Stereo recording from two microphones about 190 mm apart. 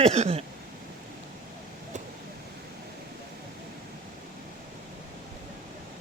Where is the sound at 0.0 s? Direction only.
35° right (ahead or behind).